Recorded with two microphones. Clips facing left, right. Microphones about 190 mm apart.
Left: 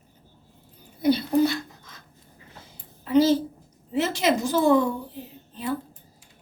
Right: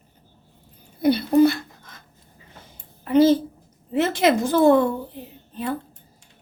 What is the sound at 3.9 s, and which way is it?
Speech, 55° right (ahead or behind).